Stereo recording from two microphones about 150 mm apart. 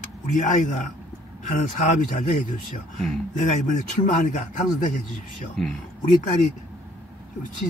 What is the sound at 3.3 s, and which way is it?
A man's voice, 60° left (ahead or behind).